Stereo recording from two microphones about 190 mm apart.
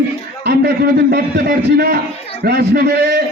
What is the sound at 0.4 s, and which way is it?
A man's voice, 55° right (ahead or behind).